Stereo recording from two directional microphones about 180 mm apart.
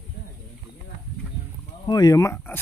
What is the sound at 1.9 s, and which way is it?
Speech, 20° left (ahead or behind).